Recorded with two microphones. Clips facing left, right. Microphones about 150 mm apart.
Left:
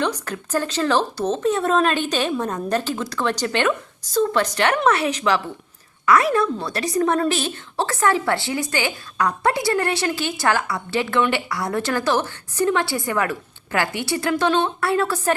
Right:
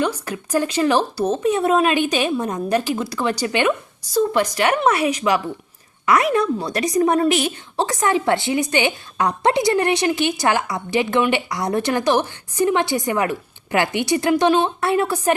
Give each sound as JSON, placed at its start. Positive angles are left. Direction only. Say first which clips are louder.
{"t": 0.0, "sound": "a woman's voice", "louder": "right 2 dB", "side_deg": -10}